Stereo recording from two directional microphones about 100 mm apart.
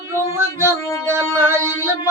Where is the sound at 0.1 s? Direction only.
25° right (ahead or behind).